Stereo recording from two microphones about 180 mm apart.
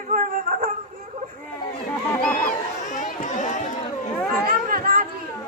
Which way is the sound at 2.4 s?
45° left (ahead or behind).